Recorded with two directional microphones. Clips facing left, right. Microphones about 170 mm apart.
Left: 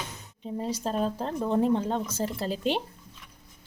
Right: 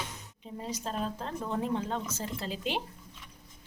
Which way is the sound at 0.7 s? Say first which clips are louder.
Left 5 dB; 40° left (ahead or behind).